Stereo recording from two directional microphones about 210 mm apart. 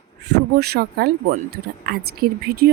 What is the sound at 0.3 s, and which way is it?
Speech, 50° right (ahead or behind).